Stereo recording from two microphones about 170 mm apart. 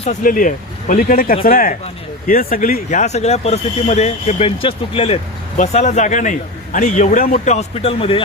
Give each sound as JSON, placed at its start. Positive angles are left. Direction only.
{"t": 0.0, "sound": "speech", "side_deg": 50}